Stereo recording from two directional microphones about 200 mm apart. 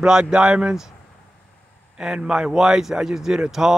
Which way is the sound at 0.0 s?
5° right (ahead or behind).